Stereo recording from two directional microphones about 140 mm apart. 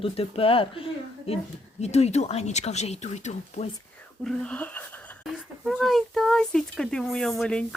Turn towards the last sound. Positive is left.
turn(degrees=5)  # may be behind; listen again after turning